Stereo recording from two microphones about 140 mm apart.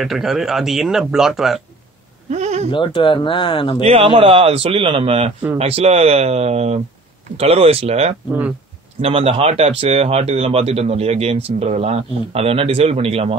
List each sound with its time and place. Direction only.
0.0 s speech: centre (ahead or behind)
2.3 s bleat: 55° right (ahead or behind)
2.7 s speech: 35° left (ahead or behind)
3.8 s speech: 45° right (ahead or behind)
8.3 s speech: 10° right (ahead or behind)
9.0 s speech: 45° right (ahead or behind)